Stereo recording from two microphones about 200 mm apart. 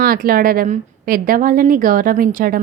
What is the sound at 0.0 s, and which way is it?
A woman's voice, 45° right (ahead or behind).